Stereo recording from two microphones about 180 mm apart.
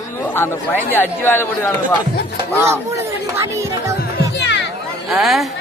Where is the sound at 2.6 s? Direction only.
15° right (ahead or behind).